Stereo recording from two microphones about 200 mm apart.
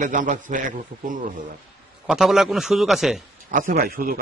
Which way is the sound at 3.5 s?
45° right (ahead or behind).